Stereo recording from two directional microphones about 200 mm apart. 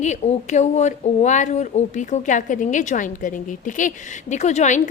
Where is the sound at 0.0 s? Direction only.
35° left (ahead or behind).